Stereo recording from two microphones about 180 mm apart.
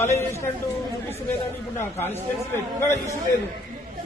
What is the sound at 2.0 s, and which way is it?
A man's voice, 15° left (ahead or behind).